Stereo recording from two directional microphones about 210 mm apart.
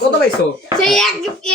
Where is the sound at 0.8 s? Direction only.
Centre (ahead or behind).